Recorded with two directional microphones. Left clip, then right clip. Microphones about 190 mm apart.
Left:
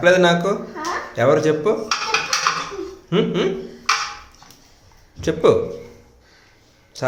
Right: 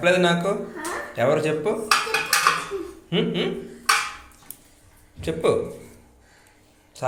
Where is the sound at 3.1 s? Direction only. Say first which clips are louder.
Left 5 dB; 35° left (ahead or behind).